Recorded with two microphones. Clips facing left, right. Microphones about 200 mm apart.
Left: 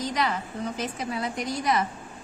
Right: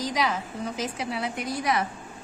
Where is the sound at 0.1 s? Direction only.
Centre (ahead or behind).